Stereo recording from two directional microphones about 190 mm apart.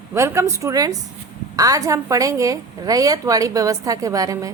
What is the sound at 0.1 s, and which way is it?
A woman's voice, 15° right (ahead or behind).